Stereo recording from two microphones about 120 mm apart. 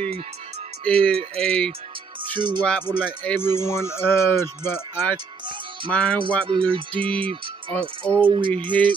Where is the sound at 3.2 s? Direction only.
20° left (ahead or behind).